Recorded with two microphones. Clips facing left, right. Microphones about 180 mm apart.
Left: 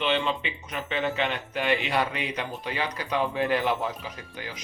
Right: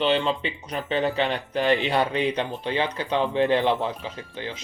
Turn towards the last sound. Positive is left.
turn(degrees=-25)  # may be behind; listen again after turning